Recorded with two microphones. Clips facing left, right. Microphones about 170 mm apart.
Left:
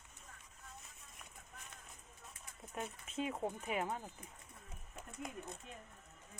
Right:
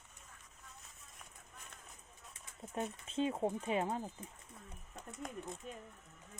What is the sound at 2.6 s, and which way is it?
Speech, 30° right (ahead or behind).